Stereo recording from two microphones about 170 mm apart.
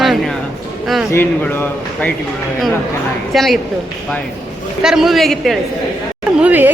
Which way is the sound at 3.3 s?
Centre (ahead or behind).